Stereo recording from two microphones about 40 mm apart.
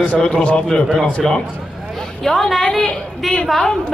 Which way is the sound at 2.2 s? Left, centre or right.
Centre.